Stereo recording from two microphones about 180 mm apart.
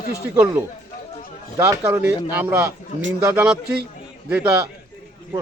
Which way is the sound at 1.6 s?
15° right (ahead or behind).